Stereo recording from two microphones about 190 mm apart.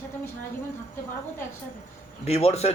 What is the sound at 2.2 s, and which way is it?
Speech, 35° left (ahead or behind).